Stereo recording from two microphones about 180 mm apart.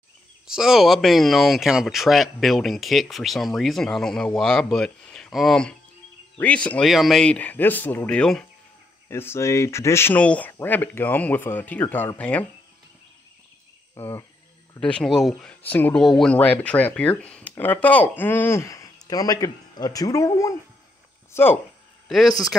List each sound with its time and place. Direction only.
0.6 s speech: centre (ahead or behind)
13.9 s insect: 15° left (ahead or behind)
14.8 s speech: 5° left (ahead or behind)
22.0 s a sound: centre (ahead or behind)